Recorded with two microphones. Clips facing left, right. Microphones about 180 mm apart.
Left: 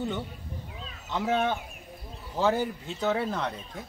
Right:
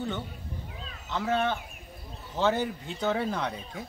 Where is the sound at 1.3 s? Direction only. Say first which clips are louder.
Left 1 dB; 15° left (ahead or behind).